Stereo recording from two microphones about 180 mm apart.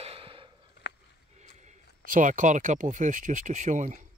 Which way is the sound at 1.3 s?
40° right (ahead or behind).